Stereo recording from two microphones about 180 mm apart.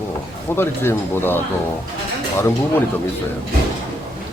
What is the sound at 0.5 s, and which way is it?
Speech, 10° left (ahead or behind).